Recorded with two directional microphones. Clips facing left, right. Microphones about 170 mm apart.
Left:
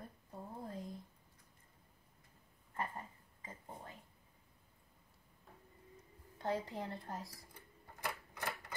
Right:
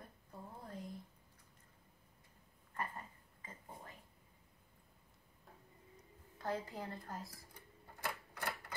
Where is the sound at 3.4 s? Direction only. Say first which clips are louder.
Left 3 dB; 25° left (ahead or behind).